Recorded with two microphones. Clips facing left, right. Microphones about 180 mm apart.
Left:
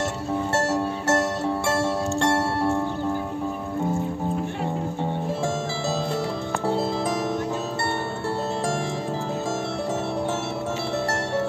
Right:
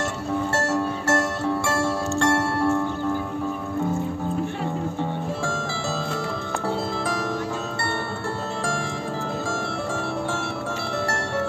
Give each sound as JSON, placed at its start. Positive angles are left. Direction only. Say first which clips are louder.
{"t": 0.6, "sound": "music", "louder": "even", "side_deg": 25}